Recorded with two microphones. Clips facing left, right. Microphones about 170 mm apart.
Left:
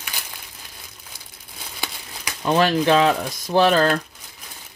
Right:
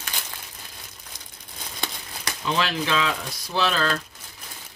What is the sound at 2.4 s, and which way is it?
Speech, 55° left (ahead or behind).